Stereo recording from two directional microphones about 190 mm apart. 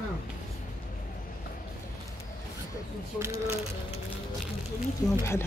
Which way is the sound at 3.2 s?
15° right (ahead or behind).